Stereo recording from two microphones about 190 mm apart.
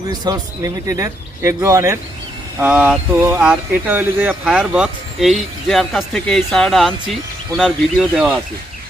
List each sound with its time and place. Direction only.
0.1 s speech: 20° right (ahead or behind); by 8.4 s centre (ahead or behind)